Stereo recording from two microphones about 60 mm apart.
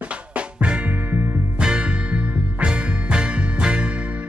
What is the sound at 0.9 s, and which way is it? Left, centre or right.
Music, right.